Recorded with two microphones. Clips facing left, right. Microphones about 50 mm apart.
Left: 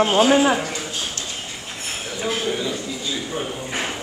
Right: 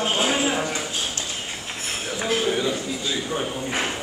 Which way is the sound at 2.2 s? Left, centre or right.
Centre.